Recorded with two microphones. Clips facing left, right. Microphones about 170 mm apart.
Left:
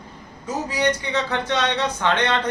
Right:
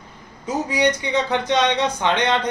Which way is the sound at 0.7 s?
15° right (ahead or behind).